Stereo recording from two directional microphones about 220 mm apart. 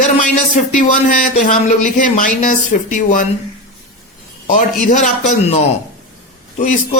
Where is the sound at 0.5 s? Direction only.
35° left (ahead or behind).